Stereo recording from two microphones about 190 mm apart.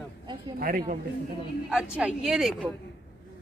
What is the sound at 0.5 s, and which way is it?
Speech, 50° right (ahead or behind).